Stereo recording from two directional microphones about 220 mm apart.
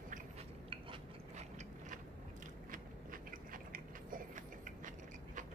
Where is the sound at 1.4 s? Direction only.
30° right (ahead or behind).